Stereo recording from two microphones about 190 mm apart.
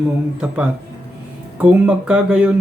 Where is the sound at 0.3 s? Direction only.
5° right (ahead or behind).